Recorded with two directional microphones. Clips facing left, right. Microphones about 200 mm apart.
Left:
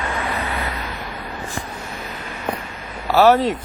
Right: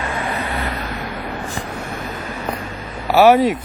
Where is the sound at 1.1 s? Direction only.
75° right (ahead or behind); by 2.0 s 60° right (ahead or behind).